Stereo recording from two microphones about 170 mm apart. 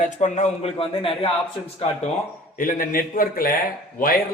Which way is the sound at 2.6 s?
55° left (ahead or behind).